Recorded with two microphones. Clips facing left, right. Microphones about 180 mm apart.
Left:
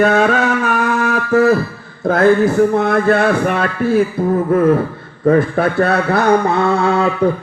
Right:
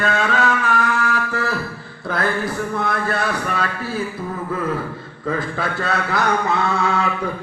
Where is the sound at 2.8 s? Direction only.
55° left (ahead or behind).